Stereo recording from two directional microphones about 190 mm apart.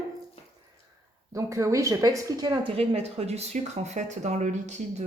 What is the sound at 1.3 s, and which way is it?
A woman's voice, 15° right (ahead or behind).